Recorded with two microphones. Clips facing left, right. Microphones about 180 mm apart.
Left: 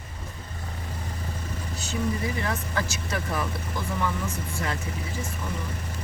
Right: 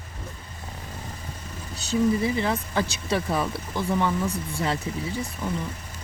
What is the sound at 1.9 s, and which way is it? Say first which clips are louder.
Speech: right 7 dB; 25° right (ahead or behind).